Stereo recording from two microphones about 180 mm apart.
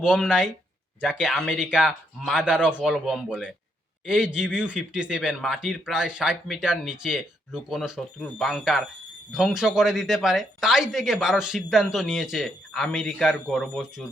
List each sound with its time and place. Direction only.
0.0 s speech: 5° right (ahead or behind)